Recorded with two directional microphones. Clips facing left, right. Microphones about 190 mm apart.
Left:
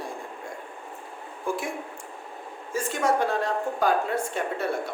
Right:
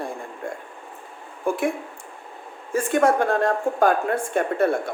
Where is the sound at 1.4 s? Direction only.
55° right (ahead or behind).